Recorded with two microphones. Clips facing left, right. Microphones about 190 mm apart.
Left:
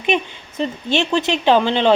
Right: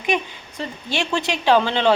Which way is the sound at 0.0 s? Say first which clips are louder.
Left 3 dB; 20° left (ahead or behind).